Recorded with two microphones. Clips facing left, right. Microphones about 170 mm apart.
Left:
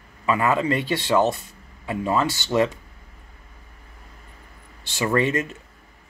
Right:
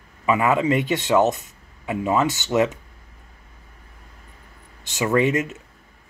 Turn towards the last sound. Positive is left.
turn(degrees=-10)  # may be behind; listen again after turning